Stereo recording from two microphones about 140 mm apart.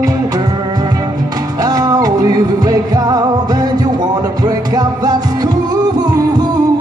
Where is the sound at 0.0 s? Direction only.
25° right (ahead or behind).